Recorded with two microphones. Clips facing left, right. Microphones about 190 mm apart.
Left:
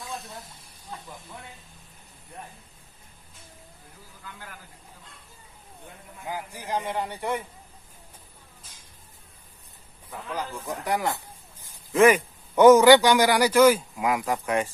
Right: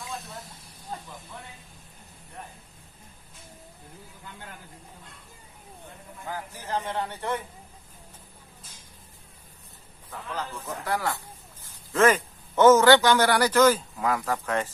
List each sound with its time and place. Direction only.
0.9 s spray: 40° right (ahead or behind)
6.2 s a man's voice: 15° left (ahead or behind)
10.1 s a man's voice: 15° left (ahead or behind)